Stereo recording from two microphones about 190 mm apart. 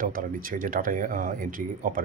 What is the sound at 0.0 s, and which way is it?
Speech, 45° right (ahead or behind).